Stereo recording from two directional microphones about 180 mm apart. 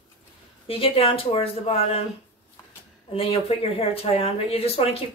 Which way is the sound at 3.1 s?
30° left (ahead or behind).